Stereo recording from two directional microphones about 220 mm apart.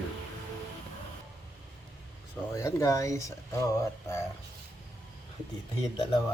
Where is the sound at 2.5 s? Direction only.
15° left (ahead or behind).